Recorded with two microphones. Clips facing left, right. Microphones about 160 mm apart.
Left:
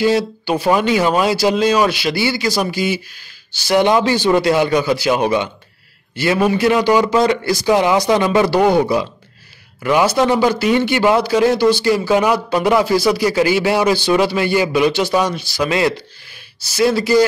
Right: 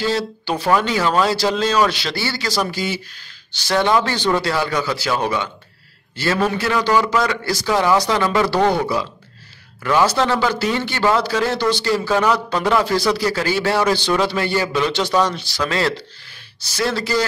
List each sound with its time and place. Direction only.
0.0 s a man's voice: 15° left (ahead or behind)